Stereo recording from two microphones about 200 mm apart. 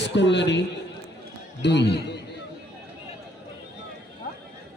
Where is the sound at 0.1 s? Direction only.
65° left (ahead or behind).